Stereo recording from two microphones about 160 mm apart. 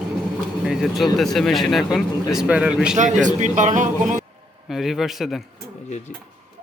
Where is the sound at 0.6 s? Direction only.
Centre (ahead or behind).